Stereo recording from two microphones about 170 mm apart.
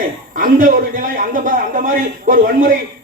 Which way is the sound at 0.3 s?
50° right (ahead or behind).